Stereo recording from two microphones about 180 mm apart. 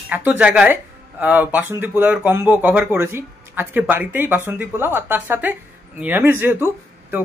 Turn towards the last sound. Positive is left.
turn(degrees=-10)  # may be behind; listen again after turning